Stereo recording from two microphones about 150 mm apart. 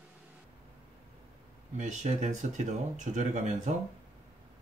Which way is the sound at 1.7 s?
55° right (ahead or behind).